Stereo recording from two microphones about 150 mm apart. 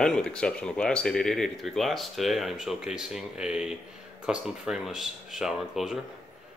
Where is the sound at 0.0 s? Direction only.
5° left (ahead or behind).